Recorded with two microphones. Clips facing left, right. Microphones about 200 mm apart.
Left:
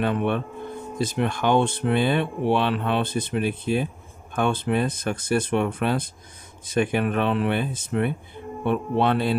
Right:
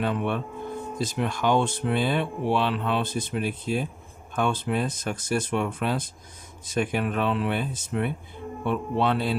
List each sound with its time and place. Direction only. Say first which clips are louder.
0.0 s speech: left 3 dB; 60° left (ahead or behind)